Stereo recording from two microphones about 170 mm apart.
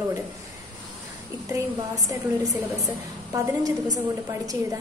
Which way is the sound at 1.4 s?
20° right (ahead or behind).